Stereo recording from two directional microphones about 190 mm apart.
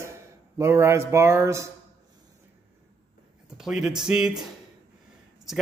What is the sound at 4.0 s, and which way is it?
Speech, 5° right (ahead or behind).